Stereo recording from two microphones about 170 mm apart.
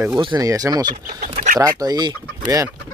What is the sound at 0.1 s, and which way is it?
Speech, 25° right (ahead or behind).